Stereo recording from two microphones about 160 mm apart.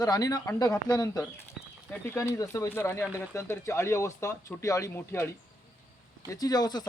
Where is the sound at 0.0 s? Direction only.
25° left (ahead or behind).